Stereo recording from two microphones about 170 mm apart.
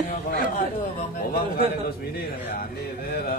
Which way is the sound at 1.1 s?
50° left (ahead or behind).